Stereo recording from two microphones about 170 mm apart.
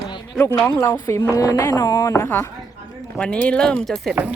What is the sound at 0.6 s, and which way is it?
A woman's voice, 20° left (ahead or behind).